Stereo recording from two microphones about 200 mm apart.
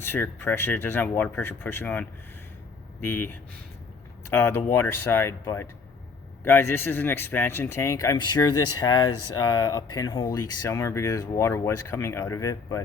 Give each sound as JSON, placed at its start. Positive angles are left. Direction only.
{"t": 0.0, "sound": "speech", "side_deg": 10}
{"t": 4.4, "sound": "speech", "side_deg": 10}